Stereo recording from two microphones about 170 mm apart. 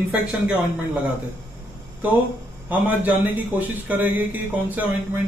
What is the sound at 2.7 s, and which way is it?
A man's voice, 10° right (ahead or behind).